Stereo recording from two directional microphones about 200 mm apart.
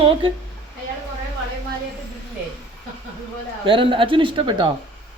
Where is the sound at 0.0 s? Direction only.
25° right (ahead or behind).